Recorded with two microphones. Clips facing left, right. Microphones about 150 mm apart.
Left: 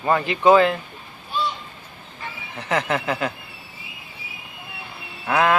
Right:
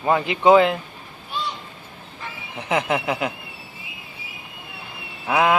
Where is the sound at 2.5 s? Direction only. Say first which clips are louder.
Right 1 dB; 15° right (ahead or behind).